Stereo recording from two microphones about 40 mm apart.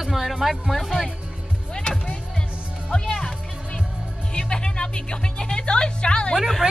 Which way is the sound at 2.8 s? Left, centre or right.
Left.